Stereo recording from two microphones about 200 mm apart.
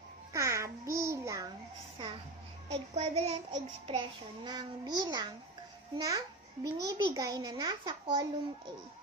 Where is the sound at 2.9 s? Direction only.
30° right (ahead or behind).